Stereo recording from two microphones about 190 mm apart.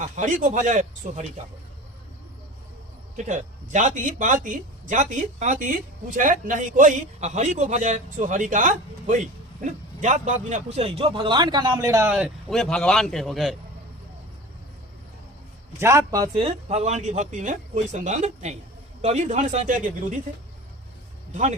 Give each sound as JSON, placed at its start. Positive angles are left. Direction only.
{"t": 0.2, "sound": "a man's voice", "side_deg": -40}
{"t": 3.2, "sound": "a man's voice", "side_deg": -40}
{"t": 12.1, "sound": "speech", "side_deg": 0}
{"t": 15.8, "sound": "a man's voice", "side_deg": -15}